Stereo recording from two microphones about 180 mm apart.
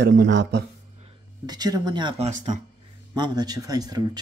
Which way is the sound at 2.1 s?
40° right (ahead or behind).